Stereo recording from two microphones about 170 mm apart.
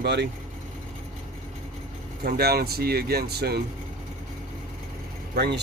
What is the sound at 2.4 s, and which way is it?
Speech, 65° right (ahead or behind).